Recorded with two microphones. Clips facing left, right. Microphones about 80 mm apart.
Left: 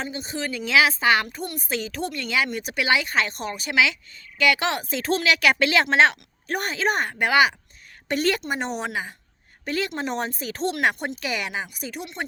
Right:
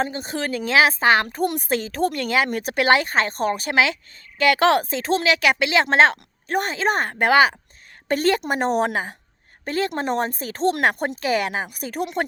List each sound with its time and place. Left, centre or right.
0.0 s a woman's voice: right
1.4 s speech: right
4.9 s speech: right
5.8 s a woman's voice: right